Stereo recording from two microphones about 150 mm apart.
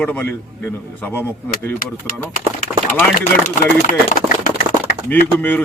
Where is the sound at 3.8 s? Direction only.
55° left (ahead or behind).